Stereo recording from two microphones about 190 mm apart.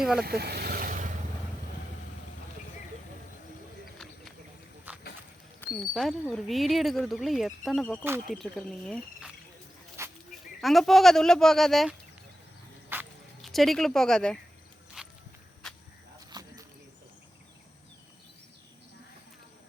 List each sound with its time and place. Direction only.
0.0 s speech: centre (ahead or behind)
0.3 s vehicle: 55° right (ahead or behind)
4.9 s a sound: 10° right (ahead or behind)
5.9 s speech: centre (ahead or behind)
10.0 s a sound: 15° right (ahead or behind)
10.6 s speech: centre (ahead or behind)
12.9 s walk: 10° right (ahead or behind)
13.4 s speech: centre (ahead or behind)
15.0 s walk: 5° right (ahead or behind)
16.3 s a sound: 20° right (ahead or behind)